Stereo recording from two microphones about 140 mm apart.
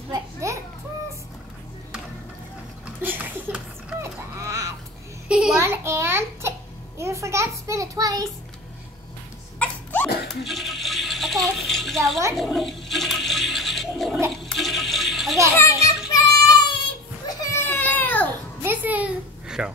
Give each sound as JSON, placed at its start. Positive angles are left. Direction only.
{"t": 0.1, "sound": "children playing", "side_deg": -20}
{"t": 3.0, "sound": "a sound", "side_deg": -15}
{"t": 5.3, "sound": "a sound", "side_deg": -5}
{"t": 7.0, "sound": "a child's voice", "side_deg": -20}
{"t": 9.6, "sound": "sneeze", "side_deg": 10}
{"t": 10.4, "sound": "a sound", "side_deg": 0}
{"t": 11.6, "sound": "a child's voice", "side_deg": 0}
{"t": 12.4, "sound": "toilet flush", "side_deg": 0}
{"t": 15.5, "sound": "children playing", "side_deg": 20}
{"t": 16.1, "sound": "child singing", "side_deg": 25}
{"t": 17.3, "sound": "baby cry", "side_deg": 20}
{"t": 18.6, "sound": "a sound", "side_deg": -10}